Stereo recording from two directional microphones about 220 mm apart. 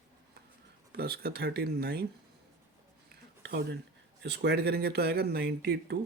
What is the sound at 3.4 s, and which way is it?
Speech, 50° right (ahead or behind).